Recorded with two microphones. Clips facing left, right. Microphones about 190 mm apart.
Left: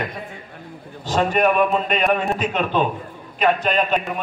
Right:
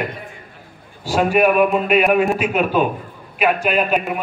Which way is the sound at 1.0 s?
10° right (ahead or behind).